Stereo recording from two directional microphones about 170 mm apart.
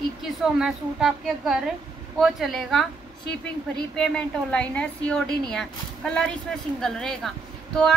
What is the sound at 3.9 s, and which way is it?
A woman's voice, 5° left (ahead or behind).